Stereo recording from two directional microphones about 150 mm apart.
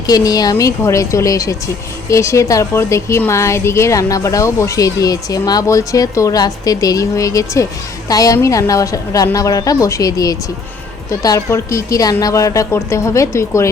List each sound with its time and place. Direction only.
0.1 s speech: 25° left (ahead or behind)